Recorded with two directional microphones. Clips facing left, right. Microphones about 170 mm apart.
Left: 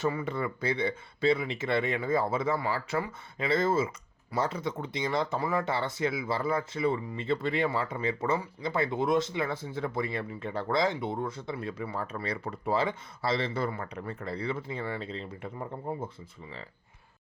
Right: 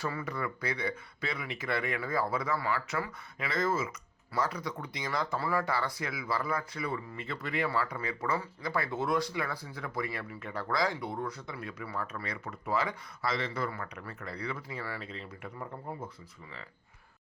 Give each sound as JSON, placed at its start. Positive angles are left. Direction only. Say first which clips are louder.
{"t": 0.0, "sound": "speech", "louder": "left 5 dB", "side_deg": 20}